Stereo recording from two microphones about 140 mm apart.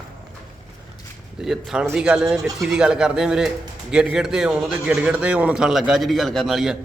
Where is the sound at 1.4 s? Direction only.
5° right (ahead or behind).